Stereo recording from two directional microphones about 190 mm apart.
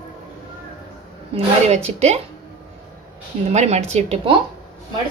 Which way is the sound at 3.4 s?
35° right (ahead or behind).